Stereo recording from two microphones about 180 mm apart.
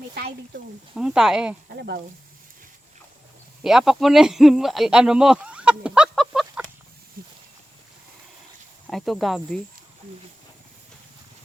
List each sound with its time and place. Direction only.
0.1 s speech: 65° right (ahead or behind)
0.9 s speech: 5° right (ahead or behind)
3.6 s speech: centre (ahead or behind)
7.2 s a sound: 55° right (ahead or behind)
8.9 s speech: centre (ahead or behind)